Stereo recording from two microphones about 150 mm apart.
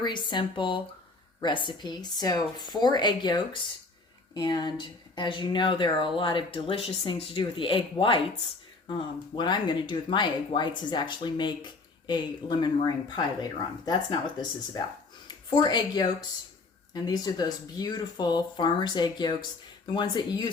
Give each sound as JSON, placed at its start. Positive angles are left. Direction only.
{"t": 0.0, "sound": "speech", "side_deg": 30}
{"t": 15.3, "sound": "speech", "side_deg": 30}